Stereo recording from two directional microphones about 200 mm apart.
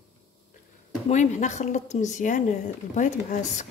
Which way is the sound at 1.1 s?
35° left (ahead or behind).